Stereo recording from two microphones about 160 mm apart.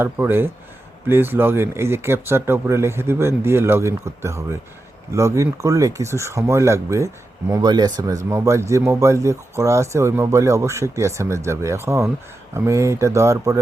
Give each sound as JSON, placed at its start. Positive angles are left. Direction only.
{"t": 0.0, "sound": "speech", "side_deg": -15}